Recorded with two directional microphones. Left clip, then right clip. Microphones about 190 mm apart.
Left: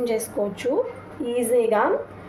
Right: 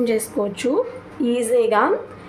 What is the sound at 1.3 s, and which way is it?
Speech, 50° right (ahead or behind).